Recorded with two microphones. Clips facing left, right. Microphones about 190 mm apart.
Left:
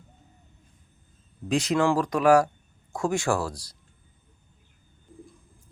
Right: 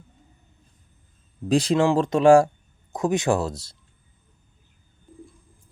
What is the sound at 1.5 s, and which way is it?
Speech, 35° right (ahead or behind).